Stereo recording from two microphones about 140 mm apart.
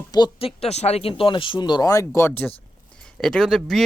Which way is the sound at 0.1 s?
35° left (ahead or behind).